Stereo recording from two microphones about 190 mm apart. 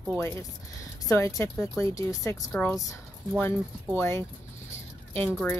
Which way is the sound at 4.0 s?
15° left (ahead or behind).